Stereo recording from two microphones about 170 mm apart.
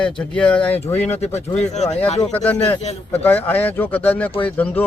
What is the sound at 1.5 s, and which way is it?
Speech, 40° left (ahead or behind).